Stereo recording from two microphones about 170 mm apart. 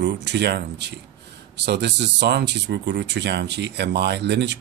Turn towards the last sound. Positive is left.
turn(degrees=-90)